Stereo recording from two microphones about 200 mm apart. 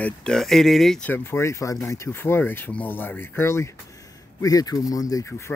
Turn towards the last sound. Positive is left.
turn(degrees=15)  # may be behind; listen again after turning